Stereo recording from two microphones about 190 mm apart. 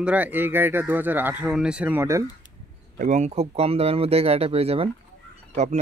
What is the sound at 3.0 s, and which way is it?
Speech, 40° right (ahead or behind).